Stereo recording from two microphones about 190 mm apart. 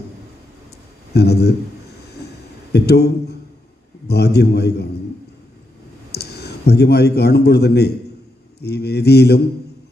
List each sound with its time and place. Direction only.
1.1 s mantra: 60° left (ahead or behind)
2.7 s mantra: 60° left (ahead or behind)
6.1 s a man's voice: 60° left (ahead or behind)
8.5 s mantra: 60° left (ahead or behind)